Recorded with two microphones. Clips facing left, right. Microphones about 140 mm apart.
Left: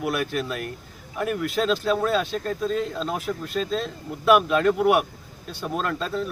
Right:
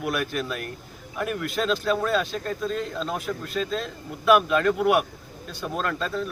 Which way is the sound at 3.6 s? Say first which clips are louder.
Left 2 dB; 35° left (ahead or behind).